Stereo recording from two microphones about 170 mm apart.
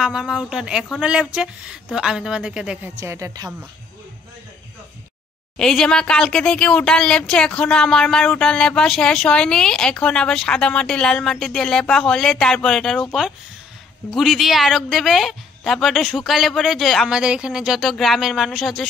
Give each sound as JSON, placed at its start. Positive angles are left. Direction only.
{"t": 0.0, "sound": "speech", "side_deg": -5}
{"t": 3.0, "sound": "a woman's voice", "side_deg": -15}
{"t": 5.6, "sound": "speech", "side_deg": 5}